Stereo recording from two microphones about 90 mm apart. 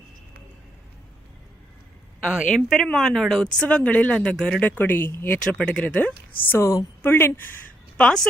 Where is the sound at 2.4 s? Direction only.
5° left (ahead or behind); by 5.4 s 20° left (ahead or behind).